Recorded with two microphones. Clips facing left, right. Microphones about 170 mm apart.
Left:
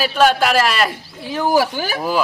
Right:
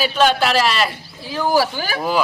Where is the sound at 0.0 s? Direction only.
5° left (ahead or behind).